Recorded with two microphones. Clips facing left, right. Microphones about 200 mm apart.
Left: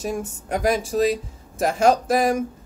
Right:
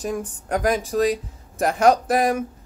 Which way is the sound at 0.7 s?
30° left (ahead or behind).